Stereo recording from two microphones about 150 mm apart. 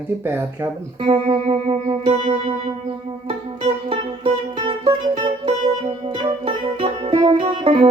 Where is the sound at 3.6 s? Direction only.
50° right (ahead or behind).